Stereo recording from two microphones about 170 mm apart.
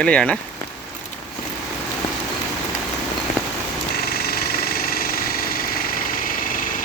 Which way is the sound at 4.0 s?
65° left (ahead or behind).